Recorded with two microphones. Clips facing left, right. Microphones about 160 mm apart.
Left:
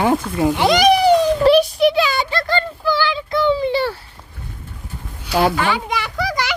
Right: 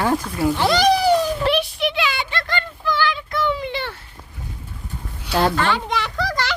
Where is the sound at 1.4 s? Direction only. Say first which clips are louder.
Left 8 dB; 40° left (ahead or behind).